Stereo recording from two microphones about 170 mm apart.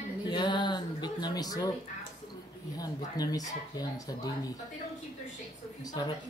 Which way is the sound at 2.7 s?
20° left (ahead or behind).